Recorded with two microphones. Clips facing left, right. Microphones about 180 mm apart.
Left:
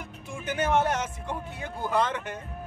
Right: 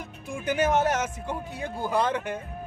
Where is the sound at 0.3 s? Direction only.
10° right (ahead or behind).